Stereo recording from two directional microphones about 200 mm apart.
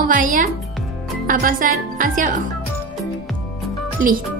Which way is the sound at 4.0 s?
40° right (ahead or behind).